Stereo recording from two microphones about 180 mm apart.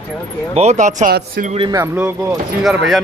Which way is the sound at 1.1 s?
55° right (ahead or behind).